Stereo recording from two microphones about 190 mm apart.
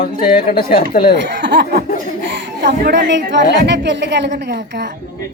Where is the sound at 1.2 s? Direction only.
65° right (ahead or behind).